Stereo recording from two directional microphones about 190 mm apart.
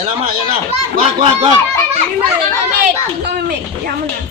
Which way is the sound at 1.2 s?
30° right (ahead or behind).